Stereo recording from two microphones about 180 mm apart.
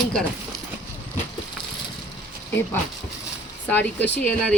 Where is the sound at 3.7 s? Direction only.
10° left (ahead or behind).